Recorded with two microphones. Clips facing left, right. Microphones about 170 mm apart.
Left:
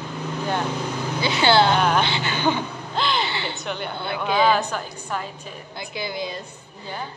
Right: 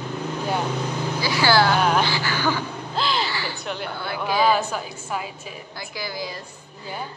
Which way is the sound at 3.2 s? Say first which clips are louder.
Left 1 dB; 25° left (ahead or behind).